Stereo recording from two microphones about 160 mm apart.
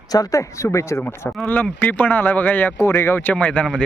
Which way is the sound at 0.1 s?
20° left (ahead or behind).